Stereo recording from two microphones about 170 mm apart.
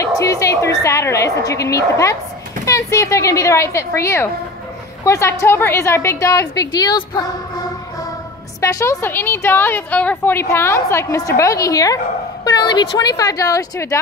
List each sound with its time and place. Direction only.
0.2 s a woman's voice: 20° left (ahead or behind)
8.5 s a woman's voice: 20° left (ahead or behind)